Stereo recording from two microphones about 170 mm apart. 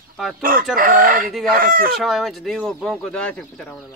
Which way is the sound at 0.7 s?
55° right (ahead or behind).